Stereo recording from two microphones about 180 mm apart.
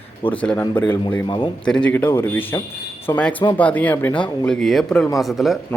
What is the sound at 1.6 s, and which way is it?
A man's voice, 5° left (ahead or behind).